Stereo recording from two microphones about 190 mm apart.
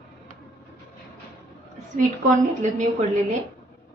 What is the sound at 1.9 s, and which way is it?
A woman's voice, 40° right (ahead or behind).